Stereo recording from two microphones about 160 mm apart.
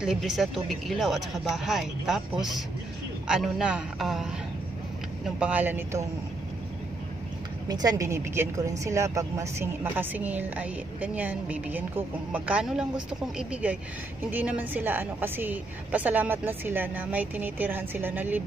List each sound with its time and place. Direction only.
0.0 s a woman's voice: centre (ahead or behind)
7.6 s a woman's voice: 25° right (ahead or behind)